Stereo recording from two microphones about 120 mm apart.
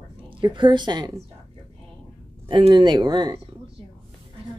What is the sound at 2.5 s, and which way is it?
Speech, 45° right (ahead or behind).